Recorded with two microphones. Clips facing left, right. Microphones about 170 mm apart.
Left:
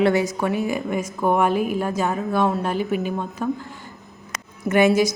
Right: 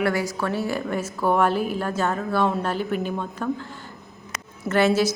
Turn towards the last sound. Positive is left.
turn(degrees=15)  # may be behind; listen again after turning